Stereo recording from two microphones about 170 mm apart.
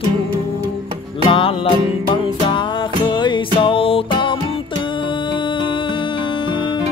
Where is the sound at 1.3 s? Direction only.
30° left (ahead or behind).